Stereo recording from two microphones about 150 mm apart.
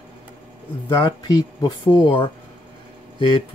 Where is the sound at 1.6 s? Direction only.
30° left (ahead or behind).